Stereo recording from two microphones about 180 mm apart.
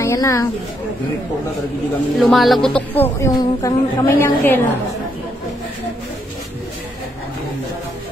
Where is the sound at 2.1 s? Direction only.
Centre (ahead or behind).